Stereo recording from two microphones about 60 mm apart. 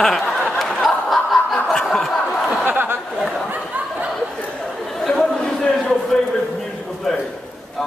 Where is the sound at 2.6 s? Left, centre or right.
Right.